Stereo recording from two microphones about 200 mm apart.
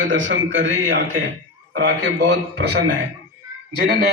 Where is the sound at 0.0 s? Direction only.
70° right (ahead or behind).